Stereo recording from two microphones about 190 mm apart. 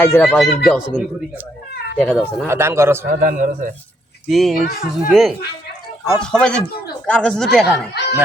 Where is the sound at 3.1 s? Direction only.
45° right (ahead or behind).